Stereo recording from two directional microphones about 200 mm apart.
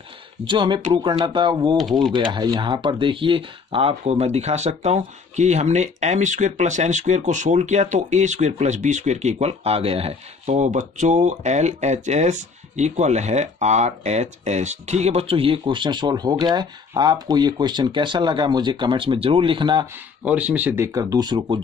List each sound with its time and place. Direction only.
0.5 s speech: 25° right (ahead or behind)
1.8 s speech: centre (ahead or behind)
2.1 s speech: 20° right (ahead or behind)
20.2 s speech: 5° right (ahead or behind)